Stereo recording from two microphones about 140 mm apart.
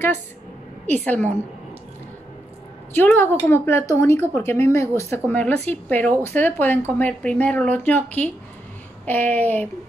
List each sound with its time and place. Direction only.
1.0 s speech: 10° left (ahead or behind)
2.9 s a woman's voice: 15° left (ahead or behind)